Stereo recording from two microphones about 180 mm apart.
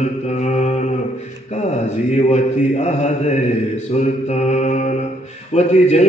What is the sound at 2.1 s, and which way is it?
Mantra, 40° left (ahead or behind).